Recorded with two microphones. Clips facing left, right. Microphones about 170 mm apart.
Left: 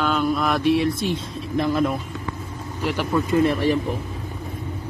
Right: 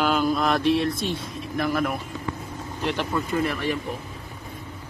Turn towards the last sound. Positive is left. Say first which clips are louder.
# left 6 dB
turn(degrees=35)  # may be behind; listen again after turning